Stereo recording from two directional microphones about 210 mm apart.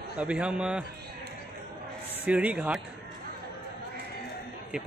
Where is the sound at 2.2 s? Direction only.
5° right (ahead or behind).